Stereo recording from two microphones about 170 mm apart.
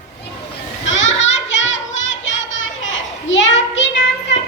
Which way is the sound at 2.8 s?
90° left.